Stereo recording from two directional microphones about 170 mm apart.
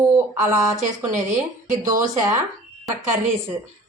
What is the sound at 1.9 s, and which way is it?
Speech, 20° right (ahead or behind).